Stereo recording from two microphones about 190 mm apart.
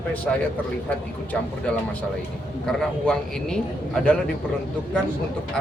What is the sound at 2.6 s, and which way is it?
Speech, 5° left (ahead or behind).